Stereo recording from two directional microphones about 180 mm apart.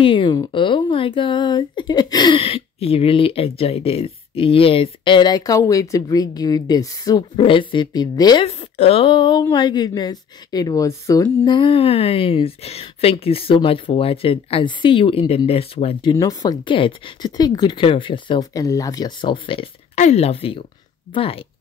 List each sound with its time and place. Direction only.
0.0 s speech: 25° left (ahead or behind)
8.5 s speech: 35° left (ahead or behind)